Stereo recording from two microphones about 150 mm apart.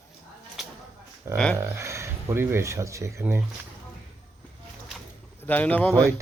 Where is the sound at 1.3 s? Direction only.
5° left (ahead or behind).